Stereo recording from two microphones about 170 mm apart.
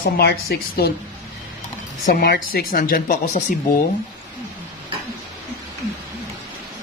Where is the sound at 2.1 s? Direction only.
60° left (ahead or behind).